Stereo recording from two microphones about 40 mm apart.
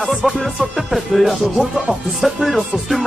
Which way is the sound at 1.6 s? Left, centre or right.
Right.